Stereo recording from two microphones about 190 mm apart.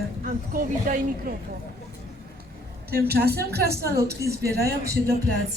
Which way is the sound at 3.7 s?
15° right (ahead or behind).